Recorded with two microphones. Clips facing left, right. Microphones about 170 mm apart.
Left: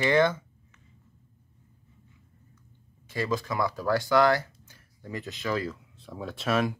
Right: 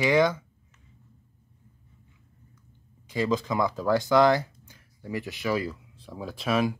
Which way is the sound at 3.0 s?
15° right (ahead or behind).